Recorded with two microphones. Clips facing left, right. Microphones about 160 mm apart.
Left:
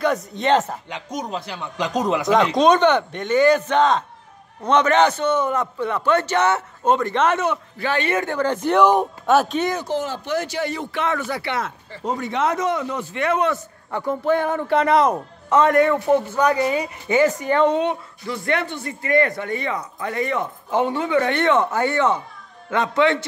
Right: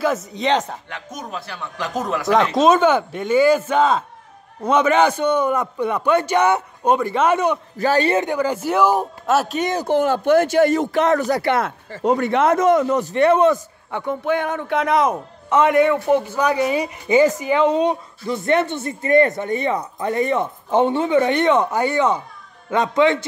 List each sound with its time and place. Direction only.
0.0 s a man's voice: centre (ahead or behind)
0.8 s speech: 15° left (ahead or behind)
2.5 s a man's voice: 5° right (ahead or behind)
7.7 s a man's voice: 40° right (ahead or behind)
8.2 s a man's voice: 15° right (ahead or behind)
9.8 s speech: 55° right (ahead or behind); by 13.5 s 30° right (ahead or behind)
13.9 s a man's voice: centre (ahead or behind)
18.2 s a man's voice: 20° right (ahead or behind)